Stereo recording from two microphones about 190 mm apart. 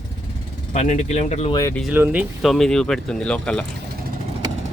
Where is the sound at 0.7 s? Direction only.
40° left (ahead or behind).